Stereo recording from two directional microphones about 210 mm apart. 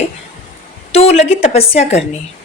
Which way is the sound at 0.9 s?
30° left (ahead or behind).